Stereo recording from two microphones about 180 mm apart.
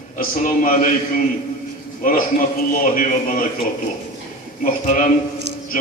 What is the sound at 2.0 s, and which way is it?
Mantra, 50° left (ahead or behind).